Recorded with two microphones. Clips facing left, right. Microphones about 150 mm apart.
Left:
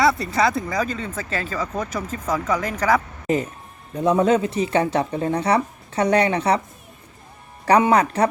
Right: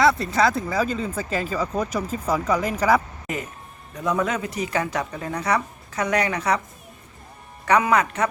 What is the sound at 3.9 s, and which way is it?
Speech, 30° left (ahead or behind).